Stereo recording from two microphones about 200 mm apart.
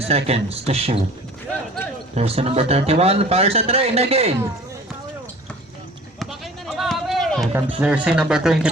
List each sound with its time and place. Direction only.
0.0 s speech: 30° right (ahead or behind)
2.1 s speech: 30° right (ahead or behind)
6.1 s run: centre (ahead or behind)
7.5 s speech: 5° right (ahead or behind)